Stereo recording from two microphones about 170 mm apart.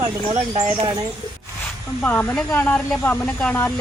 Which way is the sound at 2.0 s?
10° left (ahead or behind).